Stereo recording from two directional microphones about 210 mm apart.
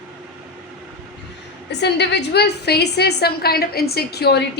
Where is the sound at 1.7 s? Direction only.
55° left (ahead or behind).